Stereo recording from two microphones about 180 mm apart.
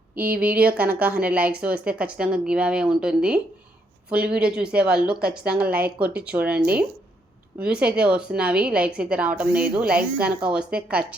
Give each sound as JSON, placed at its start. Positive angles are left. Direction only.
{"t": 0.7, "sound": "a woman's voice", "side_deg": -10}
{"t": 4.1, "sound": "speech", "side_deg": -55}
{"t": 4.4, "sound": "a woman's voice", "side_deg": -5}